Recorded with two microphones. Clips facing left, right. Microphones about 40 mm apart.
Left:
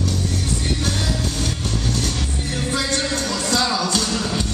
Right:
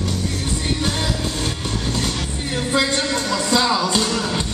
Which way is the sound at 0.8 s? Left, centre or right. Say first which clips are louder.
Right 1 dB; right.